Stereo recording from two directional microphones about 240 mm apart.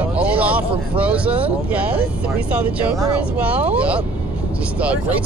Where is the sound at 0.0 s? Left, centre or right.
Centre.